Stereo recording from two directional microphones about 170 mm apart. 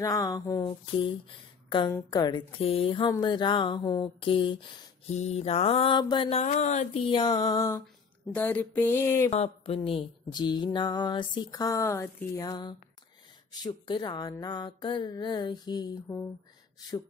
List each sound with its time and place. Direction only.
0.0 s music: 20° left (ahead or behind)
1.7 s a woman's voice: 30° left (ahead or behind)
2.0 s music: 25° left (ahead or behind)
5.1 s mantra: 40° left (ahead or behind)
6.4 s speech: 50° left (ahead or behind)
7.1 s music: 25° left (ahead or behind)
8.3 s speech: 10° left (ahead or behind)
9.3 s music: 35° left (ahead or behind)
16.1 s speech: 15° left (ahead or behind)